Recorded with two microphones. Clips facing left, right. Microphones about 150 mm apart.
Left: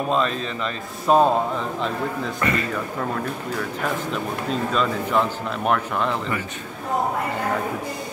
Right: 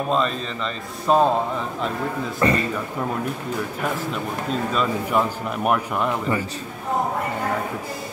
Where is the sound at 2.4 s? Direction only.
30° right (ahead or behind).